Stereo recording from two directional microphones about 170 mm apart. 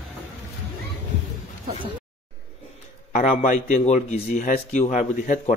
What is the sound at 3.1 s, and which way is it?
Speech, 45° left (ahead or behind).